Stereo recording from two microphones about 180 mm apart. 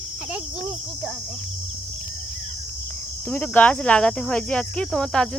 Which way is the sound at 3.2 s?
10° left (ahead or behind).